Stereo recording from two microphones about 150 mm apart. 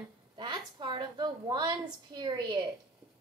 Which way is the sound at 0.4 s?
30° right (ahead or behind).